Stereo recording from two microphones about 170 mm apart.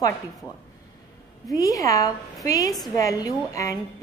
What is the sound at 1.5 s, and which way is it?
A woman's voice, 20° left (ahead or behind).